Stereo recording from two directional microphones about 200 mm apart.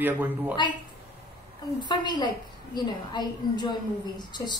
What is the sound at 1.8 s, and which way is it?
A woman's voice, 20° left (ahead or behind).